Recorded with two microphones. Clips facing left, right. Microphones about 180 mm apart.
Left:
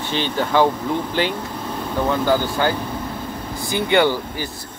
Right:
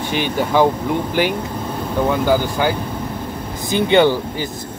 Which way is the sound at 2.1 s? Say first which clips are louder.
Right 1 dB; 10° right (ahead or behind).